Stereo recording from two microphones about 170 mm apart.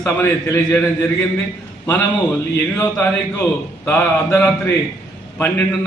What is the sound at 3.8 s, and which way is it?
A man's voice, 15° left (ahead or behind).